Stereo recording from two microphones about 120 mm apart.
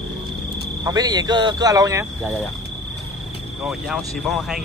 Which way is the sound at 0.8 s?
35° right (ahead or behind).